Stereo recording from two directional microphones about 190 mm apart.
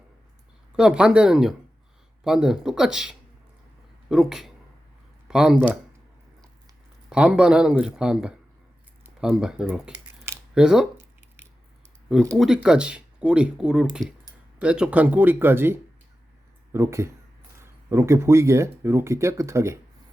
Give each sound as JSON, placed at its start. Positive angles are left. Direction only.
{"t": 0.8, "sound": "speech", "side_deg": -5}
{"t": 7.1, "sound": "speech", "side_deg": -5}
{"t": 9.0, "sound": "camera", "side_deg": -5}
{"t": 12.4, "sound": "speech", "side_deg": -5}